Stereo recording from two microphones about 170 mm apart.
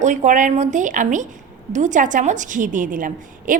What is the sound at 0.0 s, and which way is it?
A woman's voice, 45° right (ahead or behind).